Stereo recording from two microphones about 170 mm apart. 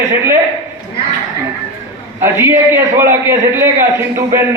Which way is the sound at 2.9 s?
15° right (ahead or behind).